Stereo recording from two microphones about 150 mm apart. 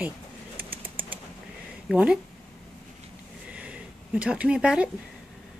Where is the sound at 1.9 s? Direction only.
5° right (ahead or behind).